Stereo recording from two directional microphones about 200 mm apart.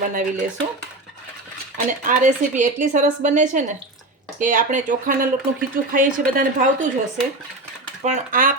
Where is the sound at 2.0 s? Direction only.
40° right (ahead or behind).